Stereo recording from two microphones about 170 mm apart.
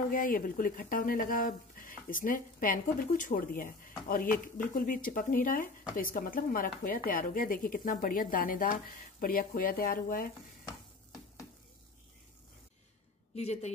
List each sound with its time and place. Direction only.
0.1 s a woman's voice: 55° left (ahead or behind)
13.4 s speech: 40° left (ahead or behind)